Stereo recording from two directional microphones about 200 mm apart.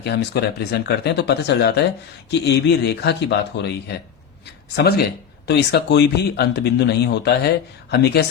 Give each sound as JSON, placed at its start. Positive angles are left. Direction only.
{"t": 0.0, "sound": "a man's voice", "side_deg": 55}